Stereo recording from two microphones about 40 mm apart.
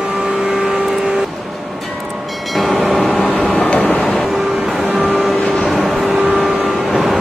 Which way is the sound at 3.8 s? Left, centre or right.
Left.